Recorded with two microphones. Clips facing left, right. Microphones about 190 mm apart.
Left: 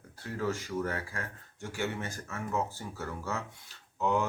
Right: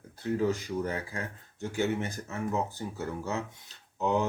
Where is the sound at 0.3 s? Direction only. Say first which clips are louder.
Right 5 dB; 20° right (ahead or behind).